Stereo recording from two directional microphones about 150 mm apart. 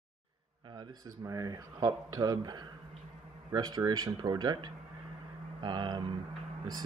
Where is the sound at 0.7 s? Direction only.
20° right (ahead or behind).